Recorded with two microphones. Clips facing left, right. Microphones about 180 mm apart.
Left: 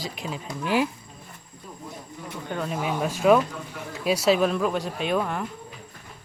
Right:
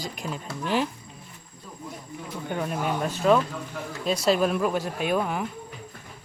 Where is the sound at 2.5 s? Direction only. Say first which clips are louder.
Even; 10° right (ahead or behind).